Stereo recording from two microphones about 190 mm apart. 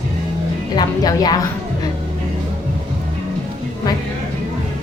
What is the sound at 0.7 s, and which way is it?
Speech, 20° left (ahead or behind).